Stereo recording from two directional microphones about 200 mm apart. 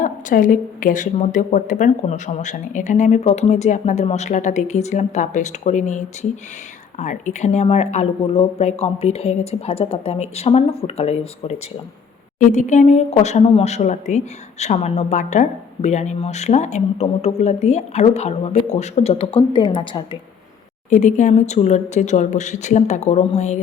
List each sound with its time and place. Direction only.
0.0 s a woman's voice: 40° left (ahead or behind); by 20.1 s 25° left (ahead or behind)
20.9 s a woman's voice: 35° left (ahead or behind)